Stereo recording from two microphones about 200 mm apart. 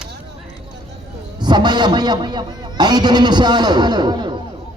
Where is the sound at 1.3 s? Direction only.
20° right (ahead or behind).